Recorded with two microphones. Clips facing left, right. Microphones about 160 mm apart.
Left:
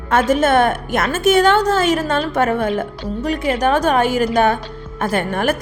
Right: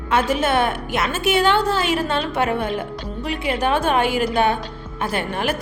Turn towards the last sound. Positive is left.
turn(degrees=50)  # may be behind; listen again after turning